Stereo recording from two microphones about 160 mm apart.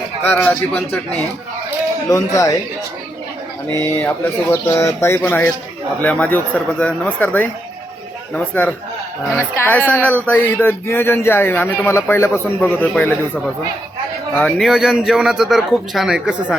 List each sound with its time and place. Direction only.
0.2 s a man's voice: 10° left (ahead or behind)
3.9 s a man's voice: 15° left (ahead or behind)
14.7 s a man's voice: 5° right (ahead or behind)